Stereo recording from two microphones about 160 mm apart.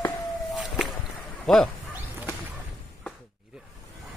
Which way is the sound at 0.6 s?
5° right (ahead or behind).